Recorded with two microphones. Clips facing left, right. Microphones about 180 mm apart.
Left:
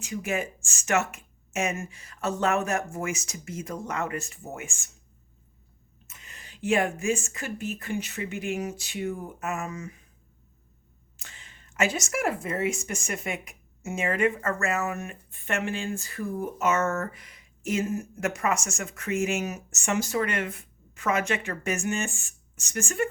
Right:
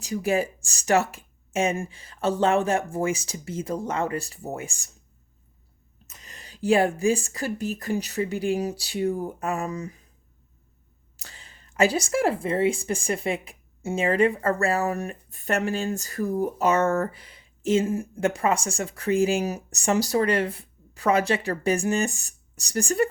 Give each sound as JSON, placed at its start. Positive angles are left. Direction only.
{"t": 0.0, "sound": "speech", "side_deg": -35}
{"t": 6.1, "sound": "speech", "side_deg": -35}
{"t": 11.2, "sound": "speech", "side_deg": -35}